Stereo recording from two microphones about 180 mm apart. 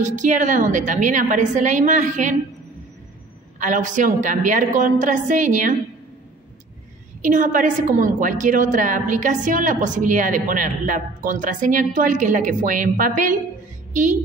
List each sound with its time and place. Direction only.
0.0 s a woman's voice: 40° right (ahead or behind)
3.5 s a woman's voice: 45° right (ahead or behind)
7.2 s a woman's voice: 45° right (ahead or behind)